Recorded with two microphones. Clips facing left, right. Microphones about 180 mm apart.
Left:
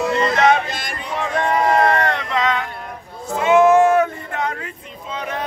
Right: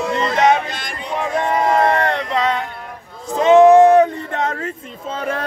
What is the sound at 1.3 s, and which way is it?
Music, 20° right (ahead or behind).